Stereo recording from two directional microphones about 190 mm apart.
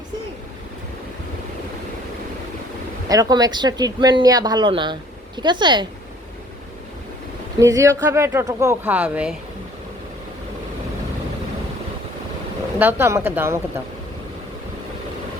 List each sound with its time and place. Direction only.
3.1 s speech: 20° right (ahead or behind)
7.6 s speech: 15° right (ahead or behind)
12.8 s speech: 15° right (ahead or behind)